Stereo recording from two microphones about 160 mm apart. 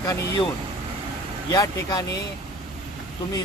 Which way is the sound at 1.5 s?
20° left (ahead or behind).